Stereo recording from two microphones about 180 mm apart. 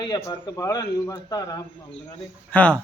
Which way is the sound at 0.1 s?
20° left (ahead or behind).